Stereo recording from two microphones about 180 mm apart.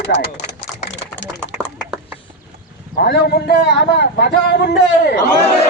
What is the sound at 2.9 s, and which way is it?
A man's voice, 70° left (ahead or behind).